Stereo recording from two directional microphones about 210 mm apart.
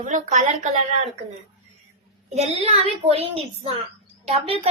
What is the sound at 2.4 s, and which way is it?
Speech, 30° right (ahead or behind).